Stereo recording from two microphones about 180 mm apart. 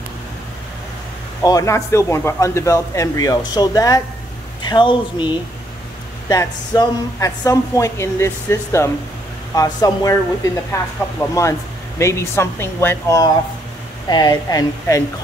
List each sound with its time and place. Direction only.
1.4 s a woman's voice: 20° left (ahead or behind)